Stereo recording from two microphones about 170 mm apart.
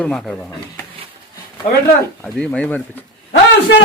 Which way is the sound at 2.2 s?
5° left (ahead or behind).